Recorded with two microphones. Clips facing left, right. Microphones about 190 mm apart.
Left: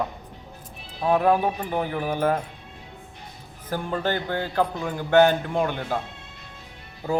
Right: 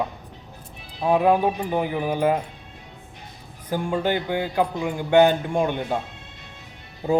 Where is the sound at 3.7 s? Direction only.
15° right (ahead or behind).